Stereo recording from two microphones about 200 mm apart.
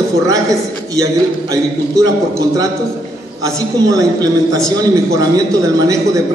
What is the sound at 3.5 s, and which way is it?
A man's voice, 15° right (ahead or behind).